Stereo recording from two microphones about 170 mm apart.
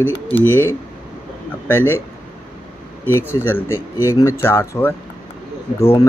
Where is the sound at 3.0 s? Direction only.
15° left (ahead or behind).